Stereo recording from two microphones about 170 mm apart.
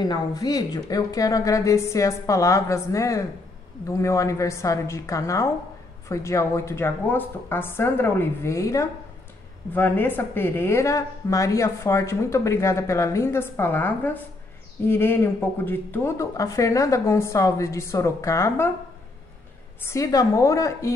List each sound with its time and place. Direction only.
0.0 s a woman's voice: 25° left (ahead or behind)
19.9 s a woman's voice: 20° left (ahead or behind)